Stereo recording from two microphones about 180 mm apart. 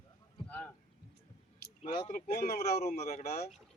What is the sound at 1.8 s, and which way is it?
Speech, 45° left (ahead or behind).